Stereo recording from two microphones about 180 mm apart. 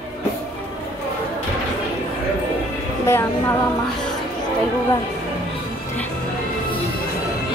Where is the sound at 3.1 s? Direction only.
15° left (ahead or behind).